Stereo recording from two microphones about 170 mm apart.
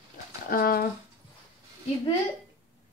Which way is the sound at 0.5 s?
60° left (ahead or behind).